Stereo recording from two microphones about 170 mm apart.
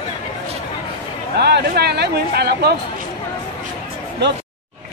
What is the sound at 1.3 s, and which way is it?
Speech, 80° right.